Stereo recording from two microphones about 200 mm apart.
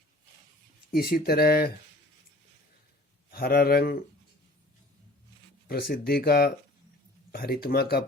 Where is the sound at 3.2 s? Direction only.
50° left (ahead or behind).